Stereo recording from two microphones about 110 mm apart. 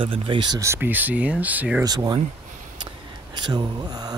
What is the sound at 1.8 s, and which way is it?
Speech, 35° right (ahead or behind).